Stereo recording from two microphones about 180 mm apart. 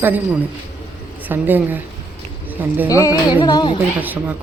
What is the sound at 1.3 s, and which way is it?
Speech, 10° right (ahead or behind).